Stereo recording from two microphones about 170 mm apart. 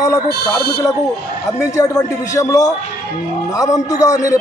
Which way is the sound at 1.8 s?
20° left (ahead or behind).